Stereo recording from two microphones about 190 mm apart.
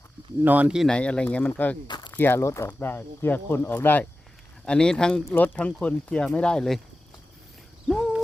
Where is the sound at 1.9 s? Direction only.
25° left (ahead or behind).